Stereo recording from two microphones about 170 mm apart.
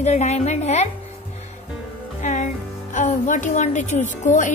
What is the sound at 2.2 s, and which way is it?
Music, 45° left (ahead or behind).